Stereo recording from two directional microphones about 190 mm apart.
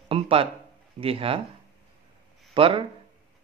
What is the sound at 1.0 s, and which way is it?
Speech, 30° right (ahead or behind).